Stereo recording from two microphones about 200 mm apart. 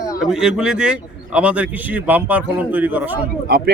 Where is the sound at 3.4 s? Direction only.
50° right (ahead or behind).